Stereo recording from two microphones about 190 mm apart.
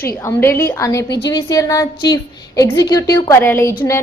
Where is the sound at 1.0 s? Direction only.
65° left (ahead or behind).